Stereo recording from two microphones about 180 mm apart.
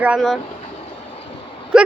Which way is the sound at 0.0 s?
5° right (ahead or behind).